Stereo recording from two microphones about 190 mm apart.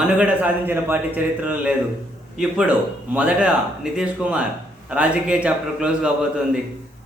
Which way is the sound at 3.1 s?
5° right (ahead or behind).